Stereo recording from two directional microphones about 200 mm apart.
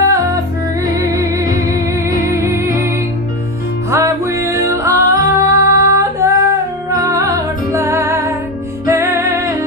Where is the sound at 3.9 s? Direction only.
15° right (ahead or behind).